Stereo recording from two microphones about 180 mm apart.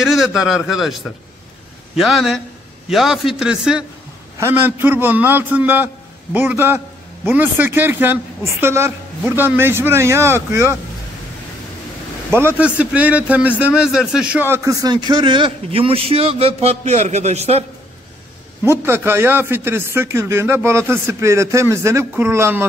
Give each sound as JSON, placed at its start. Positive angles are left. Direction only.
{"t": 0.0, "sound": "a man's voice", "side_deg": 0}
{"t": 12.3, "sound": "a man's voice", "side_deg": -10}
{"t": 18.6, "sound": "speech", "side_deg": -10}